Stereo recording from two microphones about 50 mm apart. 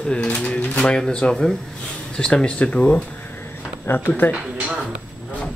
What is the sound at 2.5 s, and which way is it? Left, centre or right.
Speech, left.